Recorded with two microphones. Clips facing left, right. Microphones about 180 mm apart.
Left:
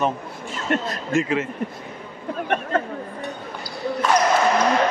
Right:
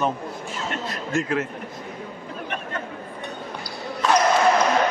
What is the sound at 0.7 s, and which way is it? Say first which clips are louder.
Speech: left 11 dB; 55° left (ahead or behind).